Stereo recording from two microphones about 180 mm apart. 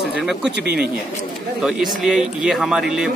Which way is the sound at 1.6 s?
Centre (ahead or behind).